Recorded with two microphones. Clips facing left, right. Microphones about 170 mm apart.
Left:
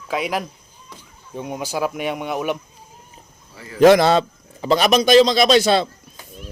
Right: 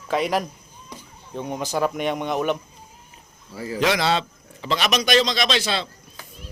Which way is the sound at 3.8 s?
50° left (ahead or behind).